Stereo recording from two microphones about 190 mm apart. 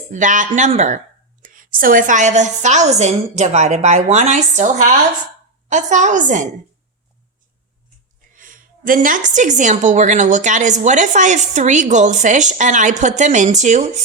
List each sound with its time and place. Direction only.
0.1 s a woman's voice: 40° right (ahead or behind)
8.4 s a woman's voice: 45° right (ahead or behind)